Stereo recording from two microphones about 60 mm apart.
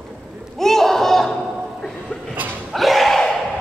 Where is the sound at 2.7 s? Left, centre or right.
Centre.